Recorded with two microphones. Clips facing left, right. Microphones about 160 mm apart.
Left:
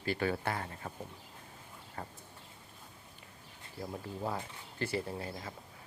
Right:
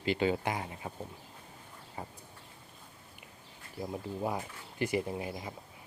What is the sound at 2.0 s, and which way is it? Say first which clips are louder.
Speech: right 1 dB; 10° right (ahead or behind).